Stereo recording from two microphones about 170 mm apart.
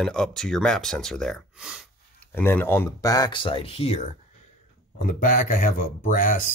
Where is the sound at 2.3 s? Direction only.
10° left (ahead or behind); by 4.0 s 35° left (ahead or behind).